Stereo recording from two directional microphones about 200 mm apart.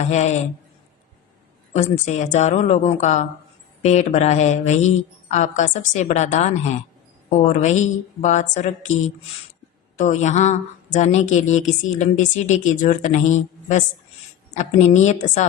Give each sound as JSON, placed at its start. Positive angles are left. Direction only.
{"t": 0.0, "sound": "speech", "side_deg": 35}
{"t": 1.7, "sound": "speech", "side_deg": 35}